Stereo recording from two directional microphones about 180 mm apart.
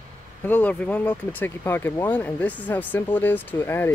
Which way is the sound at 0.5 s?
10° left (ahead or behind).